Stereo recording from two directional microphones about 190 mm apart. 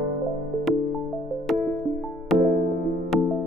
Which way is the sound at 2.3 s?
Centre (ahead or behind).